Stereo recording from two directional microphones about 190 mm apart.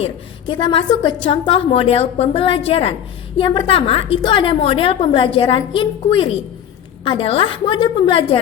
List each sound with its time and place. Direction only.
0.0 s a woman's voice: 25° left (ahead or behind)